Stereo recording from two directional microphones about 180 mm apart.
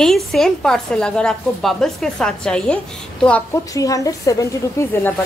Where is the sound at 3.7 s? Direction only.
20° left (ahead or behind).